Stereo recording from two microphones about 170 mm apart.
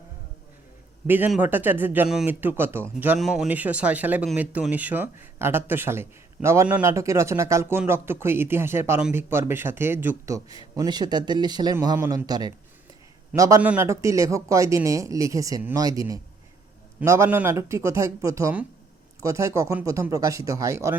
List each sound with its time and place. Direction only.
1.0 s speech: 10° right (ahead or behind)
3.2 s a man's voice: centre (ahead or behind); by 20.9 s 20° right (ahead or behind)